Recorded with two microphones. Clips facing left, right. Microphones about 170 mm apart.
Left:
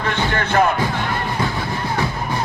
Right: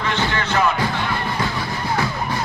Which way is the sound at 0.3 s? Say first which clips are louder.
Left 4 dB; 55° left (ahead or behind).